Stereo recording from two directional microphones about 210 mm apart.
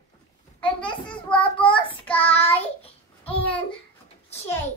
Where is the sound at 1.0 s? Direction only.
25° left (ahead or behind).